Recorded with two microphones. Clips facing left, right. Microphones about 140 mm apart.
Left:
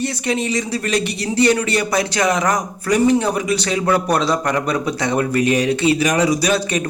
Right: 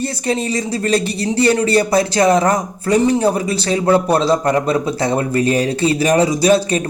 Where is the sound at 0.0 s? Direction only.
35° right (ahead or behind).